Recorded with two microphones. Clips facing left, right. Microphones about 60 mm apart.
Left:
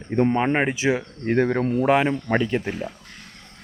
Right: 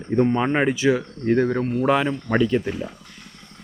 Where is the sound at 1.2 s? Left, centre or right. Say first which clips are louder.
Right 1 dB; left.